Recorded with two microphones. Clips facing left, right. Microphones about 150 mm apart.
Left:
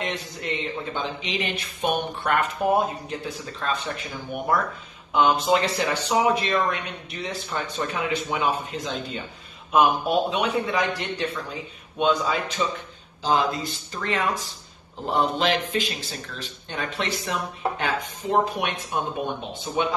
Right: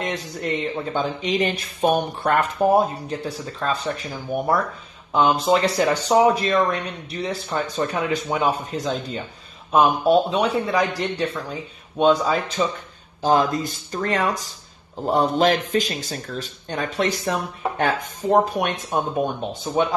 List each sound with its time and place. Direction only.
0.0 s speech: 45° right (ahead or behind)
13.2 s speech: 50° right (ahead or behind)